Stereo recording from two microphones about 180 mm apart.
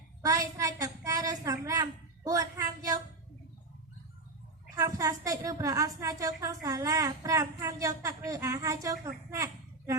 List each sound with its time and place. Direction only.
0.2 s a woman's voice: 20° right (ahead or behind)
4.7 s a woman's voice: 20° right (ahead or behind)